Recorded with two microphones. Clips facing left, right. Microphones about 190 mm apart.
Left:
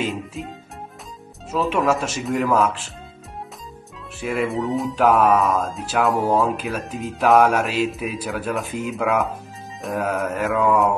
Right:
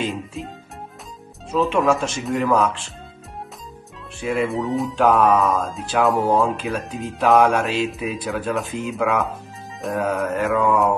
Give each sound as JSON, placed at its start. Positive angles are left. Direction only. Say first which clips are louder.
{"t": 0.1, "sound": "speech", "louder": "even", "side_deg": 0}
{"t": 1.5, "sound": "speech", "louder": "right 2 dB", "side_deg": 5}
{"t": 4.2, "sound": "speech", "louder": "right 1 dB", "side_deg": 0}